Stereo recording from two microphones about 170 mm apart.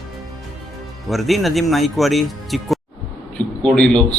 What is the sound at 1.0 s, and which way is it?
Speech, centre (ahead or behind).